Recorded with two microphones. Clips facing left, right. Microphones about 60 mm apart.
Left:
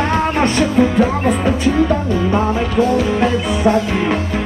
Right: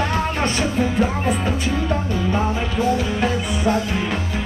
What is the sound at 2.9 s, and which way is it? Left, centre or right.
Music, left.